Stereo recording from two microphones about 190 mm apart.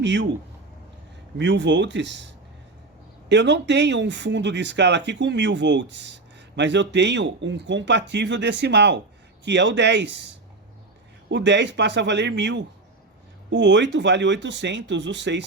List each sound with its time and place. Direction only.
0.0 s speech: 70° right (ahead or behind)
1.4 s speech: 70° right (ahead or behind)